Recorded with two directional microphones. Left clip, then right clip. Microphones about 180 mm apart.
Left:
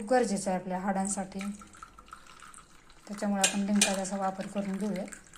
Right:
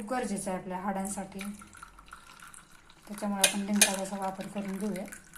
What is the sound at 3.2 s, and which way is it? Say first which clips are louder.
Speech: even; 20° left (ahead or behind).